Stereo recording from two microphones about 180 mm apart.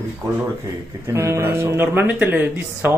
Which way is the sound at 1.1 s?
15° right (ahead or behind).